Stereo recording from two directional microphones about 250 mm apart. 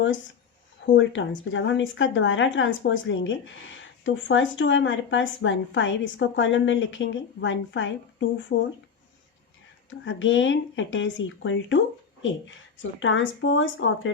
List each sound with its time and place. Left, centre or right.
0.9 s a woman's voice: left
10.0 s a woman's voice: left